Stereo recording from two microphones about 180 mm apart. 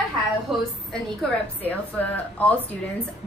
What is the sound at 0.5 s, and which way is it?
A woman's voice, centre (ahead or behind).